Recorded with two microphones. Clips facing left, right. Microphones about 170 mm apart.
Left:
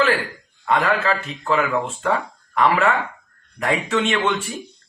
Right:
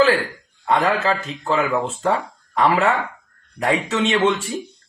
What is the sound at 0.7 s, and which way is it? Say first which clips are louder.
Speech: right 1 dB; 35° right (ahead or behind).